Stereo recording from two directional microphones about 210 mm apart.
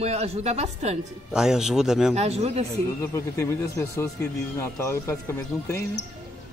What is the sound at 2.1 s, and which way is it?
Speech, 30° right (ahead or behind).